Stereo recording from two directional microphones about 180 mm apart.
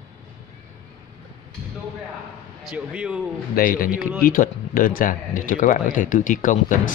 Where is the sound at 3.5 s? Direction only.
55° left (ahead or behind).